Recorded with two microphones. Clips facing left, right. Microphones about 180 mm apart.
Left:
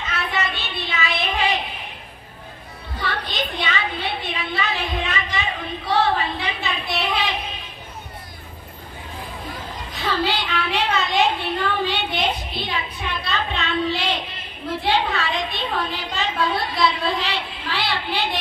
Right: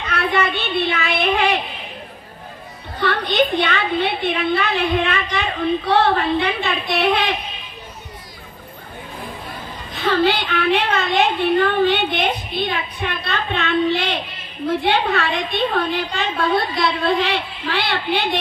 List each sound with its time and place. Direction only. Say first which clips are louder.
0.0 s child singing: right 6 dB; 60° right (ahead or behind)
3.0 s a woman's voice: right 9 dB; 60° right (ahead or behind)
10.0 s a woman's voice: right 6 dB; 60° right (ahead or behind)